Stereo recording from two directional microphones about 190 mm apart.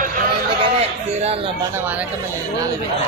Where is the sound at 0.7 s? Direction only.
35° right (ahead or behind).